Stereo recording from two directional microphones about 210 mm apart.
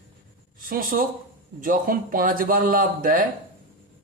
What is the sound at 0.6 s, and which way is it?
Speech, 40° right (ahead or behind).